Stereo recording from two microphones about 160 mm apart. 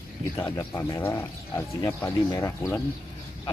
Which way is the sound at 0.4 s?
15° left (ahead or behind).